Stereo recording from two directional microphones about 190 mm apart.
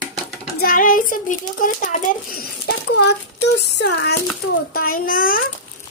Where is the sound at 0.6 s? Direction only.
45° left (ahead or behind); by 4.1 s 60° left (ahead or behind).